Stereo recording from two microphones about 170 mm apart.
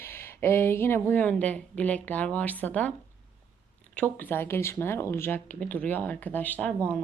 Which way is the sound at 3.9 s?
10° left (ahead or behind).